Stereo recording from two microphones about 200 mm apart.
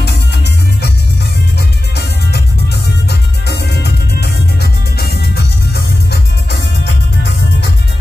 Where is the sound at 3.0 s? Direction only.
55° left (ahead or behind).